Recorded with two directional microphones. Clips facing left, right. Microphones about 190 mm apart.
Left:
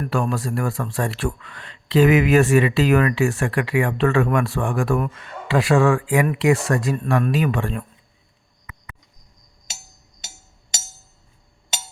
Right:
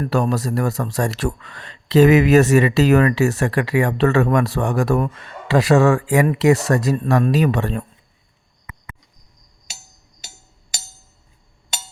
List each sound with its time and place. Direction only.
0.0 s speech: 40° right (ahead or behind)